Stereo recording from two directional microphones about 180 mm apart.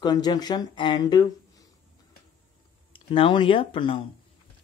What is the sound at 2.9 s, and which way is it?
Speech, 30° left (ahead or behind).